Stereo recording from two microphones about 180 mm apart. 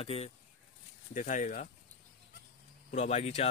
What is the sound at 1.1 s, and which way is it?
Speech, 45° left (ahead or behind).